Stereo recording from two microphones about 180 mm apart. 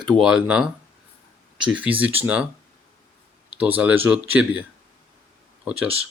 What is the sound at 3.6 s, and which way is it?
Speech, 10° right (ahead or behind).